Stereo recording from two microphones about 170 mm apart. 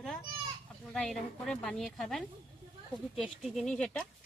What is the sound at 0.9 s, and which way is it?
Speech, 5° left (ahead or behind).